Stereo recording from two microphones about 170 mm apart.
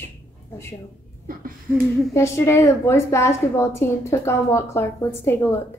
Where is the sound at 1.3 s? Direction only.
55° right (ahead or behind).